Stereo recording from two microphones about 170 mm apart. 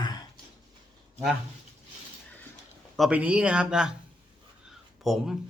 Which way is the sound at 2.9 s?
5° right (ahead or behind).